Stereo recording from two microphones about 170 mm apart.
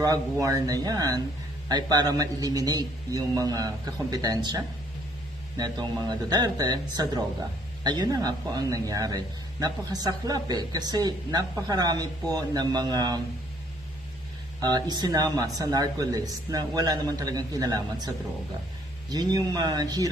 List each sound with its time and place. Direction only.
0.0 s speech: 20° right (ahead or behind)
14.6 s speech: 25° right (ahead or behind)
19.1 s speech: 20° right (ahead or behind)